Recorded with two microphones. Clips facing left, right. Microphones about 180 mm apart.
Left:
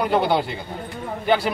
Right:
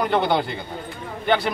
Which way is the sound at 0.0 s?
5° left (ahead or behind).